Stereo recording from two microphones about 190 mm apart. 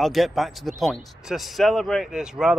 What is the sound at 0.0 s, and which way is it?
Speech, centre (ahead or behind).